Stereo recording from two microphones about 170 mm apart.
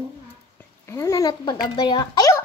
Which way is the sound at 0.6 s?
15° left (ahead or behind).